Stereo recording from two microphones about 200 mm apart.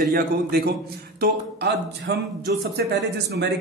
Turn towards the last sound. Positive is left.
turn(degrees=-55)  # may be behind; listen again after turning